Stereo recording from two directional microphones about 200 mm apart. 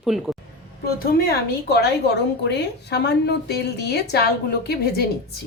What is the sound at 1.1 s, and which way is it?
A woman's voice, 50° left (ahead or behind).